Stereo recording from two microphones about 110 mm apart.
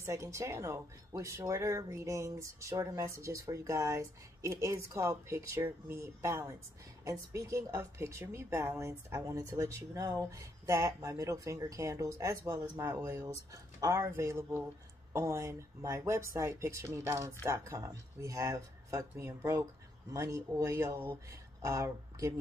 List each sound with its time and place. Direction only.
0.0 s speech: 25° right (ahead or behind)